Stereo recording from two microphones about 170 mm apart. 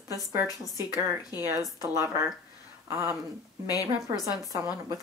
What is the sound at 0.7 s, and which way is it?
Speech, 20° left (ahead or behind).